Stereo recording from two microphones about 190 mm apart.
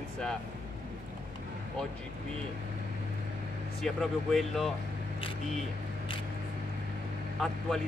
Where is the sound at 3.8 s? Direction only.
Centre (ahead or behind).